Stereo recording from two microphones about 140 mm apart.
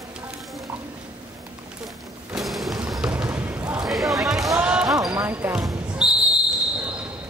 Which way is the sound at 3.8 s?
Centre (ahead or behind).